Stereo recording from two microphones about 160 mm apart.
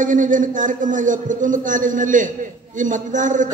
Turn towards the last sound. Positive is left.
turn(degrees=-50)  # may be behind; listen again after turning